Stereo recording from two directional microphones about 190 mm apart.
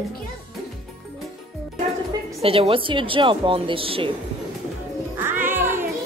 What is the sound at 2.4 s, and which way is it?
A woman's voice, 30° right (ahead or behind).